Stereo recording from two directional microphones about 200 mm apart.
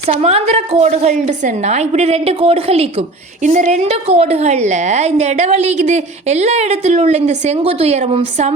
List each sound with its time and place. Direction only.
0.2 s a woman's voice: 30° right (ahead or behind)